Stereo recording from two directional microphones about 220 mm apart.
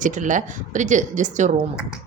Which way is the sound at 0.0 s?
35° right (ahead or behind).